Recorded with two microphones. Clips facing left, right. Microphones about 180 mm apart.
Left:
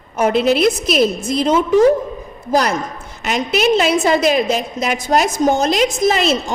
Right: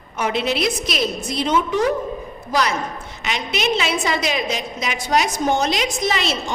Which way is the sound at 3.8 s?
45° left (ahead or behind).